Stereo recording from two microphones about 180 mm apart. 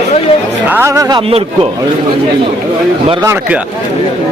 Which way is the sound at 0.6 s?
10° right (ahead or behind).